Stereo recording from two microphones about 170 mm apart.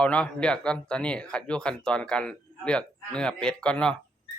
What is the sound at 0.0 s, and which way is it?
Speech, 5° left (ahead or behind).